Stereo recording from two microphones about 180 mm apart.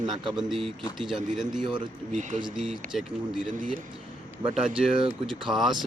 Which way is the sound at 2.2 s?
45° right (ahead or behind).